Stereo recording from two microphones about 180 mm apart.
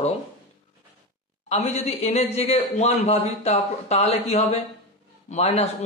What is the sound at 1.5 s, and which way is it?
A man's voice, 35° left (ahead or behind).